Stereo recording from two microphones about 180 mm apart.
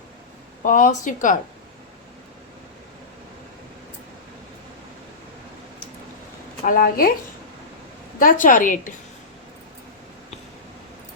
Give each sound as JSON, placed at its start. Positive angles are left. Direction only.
{"t": 0.6, "sound": "speech", "side_deg": 45}
{"t": 6.7, "sound": "speech", "side_deg": 50}
{"t": 8.2, "sound": "speech", "side_deg": 50}